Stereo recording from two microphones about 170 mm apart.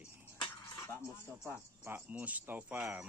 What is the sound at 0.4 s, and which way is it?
Dishes, 15° left (ahead or behind).